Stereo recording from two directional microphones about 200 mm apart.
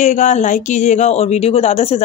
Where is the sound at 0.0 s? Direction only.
35° left (ahead or behind).